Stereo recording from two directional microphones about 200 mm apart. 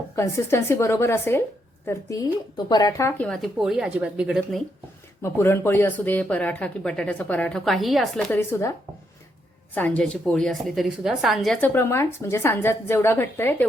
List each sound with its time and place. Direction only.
0.2 s a woman's voice: 15° left (ahead or behind)
2.6 s speech: 20° left (ahead or behind)
3.2 s speech: centre (ahead or behind)
5.2 s a woman's voice: 10° left (ahead or behind)
9.7 s a woman's voice: 10° left (ahead or behind)